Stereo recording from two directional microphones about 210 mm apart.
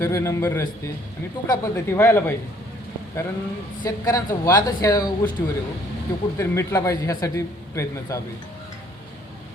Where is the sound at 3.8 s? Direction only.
20° left (ahead or behind).